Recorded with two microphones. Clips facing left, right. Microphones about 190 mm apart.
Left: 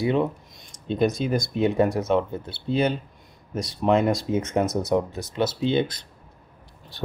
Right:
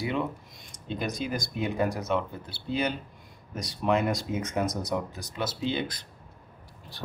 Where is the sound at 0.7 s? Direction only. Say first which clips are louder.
Left 10 dB; 25° left (ahead or behind).